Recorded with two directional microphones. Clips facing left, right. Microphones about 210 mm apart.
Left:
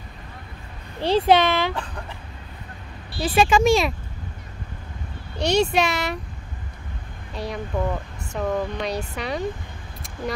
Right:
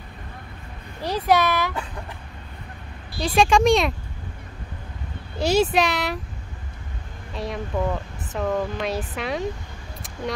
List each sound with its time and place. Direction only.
1.0 s speech: 30° left (ahead or behind)
3.2 s speech: 5° left (ahead or behind)
5.4 s speech: 5° right (ahead or behind)
7.3 s speech: centre (ahead or behind)